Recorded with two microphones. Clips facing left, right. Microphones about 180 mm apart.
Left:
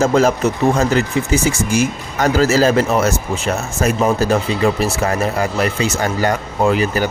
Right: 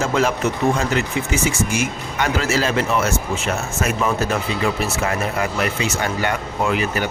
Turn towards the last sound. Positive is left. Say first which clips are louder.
# left 5 dB
turn(degrees=35)  # may be behind; listen again after turning